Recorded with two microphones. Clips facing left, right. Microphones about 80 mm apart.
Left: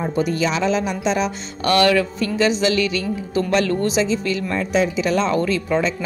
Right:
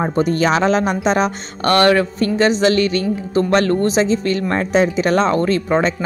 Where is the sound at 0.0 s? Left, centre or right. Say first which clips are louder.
Right 4 dB; right.